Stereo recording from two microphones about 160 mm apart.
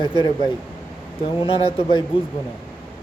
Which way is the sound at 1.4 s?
35° left (ahead or behind).